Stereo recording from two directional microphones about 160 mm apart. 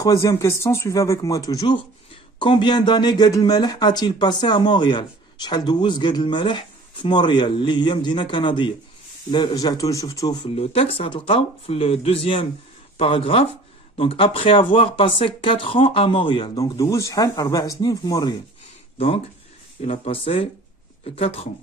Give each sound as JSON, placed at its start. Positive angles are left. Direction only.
{"t": 0.0, "sound": "speech", "side_deg": 20}
{"t": 18.9, "sound": "speech", "side_deg": 35}